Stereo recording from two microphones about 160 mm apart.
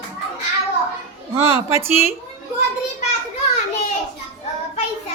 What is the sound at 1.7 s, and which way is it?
Speech, 15° right (ahead or behind).